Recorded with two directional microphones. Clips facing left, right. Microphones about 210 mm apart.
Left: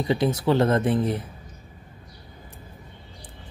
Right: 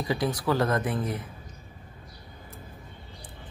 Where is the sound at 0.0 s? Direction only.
25° left (ahead or behind).